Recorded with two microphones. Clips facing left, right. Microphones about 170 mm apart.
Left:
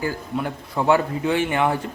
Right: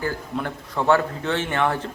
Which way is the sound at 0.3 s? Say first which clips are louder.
Left 2 dB; 10° left (ahead or behind).